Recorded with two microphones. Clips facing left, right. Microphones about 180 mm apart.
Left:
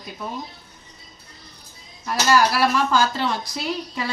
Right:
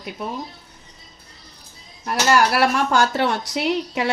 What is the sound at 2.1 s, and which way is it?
Speech, 65° right (ahead or behind).